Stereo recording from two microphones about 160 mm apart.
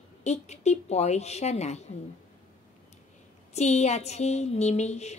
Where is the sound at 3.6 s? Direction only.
45° left (ahead or behind).